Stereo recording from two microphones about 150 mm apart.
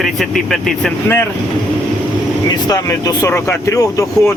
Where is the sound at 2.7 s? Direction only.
25° left (ahead or behind).